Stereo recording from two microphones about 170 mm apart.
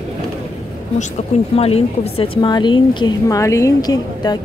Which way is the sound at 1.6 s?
35° left (ahead or behind).